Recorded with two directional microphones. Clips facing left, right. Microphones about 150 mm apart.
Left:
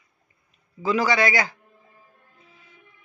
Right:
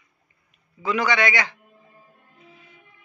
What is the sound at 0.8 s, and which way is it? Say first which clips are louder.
Speech: left 1 dB; 30° left (ahead or behind).